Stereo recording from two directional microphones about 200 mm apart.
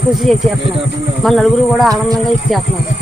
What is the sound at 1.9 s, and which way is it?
Speech, 20° right (ahead or behind).